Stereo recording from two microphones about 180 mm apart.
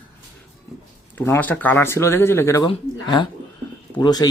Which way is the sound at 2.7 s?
25° left (ahead or behind).